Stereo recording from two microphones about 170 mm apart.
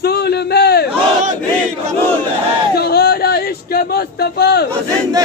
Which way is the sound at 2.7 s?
65° left (ahead or behind).